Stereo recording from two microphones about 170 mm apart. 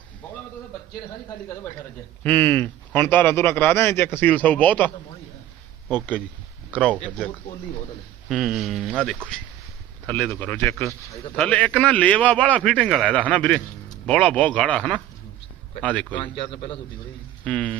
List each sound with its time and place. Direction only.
2.2 s speech: 10° left (ahead or behind)
5.9 s speech: 10° left (ahead or behind)
8.3 s speech: centre (ahead or behind)
16.1 s a man's voice: 30° left (ahead or behind)
17.4 s speech: 5° left (ahead or behind)